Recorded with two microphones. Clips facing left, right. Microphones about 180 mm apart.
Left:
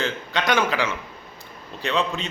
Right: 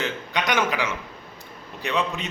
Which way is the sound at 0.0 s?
15° right (ahead or behind).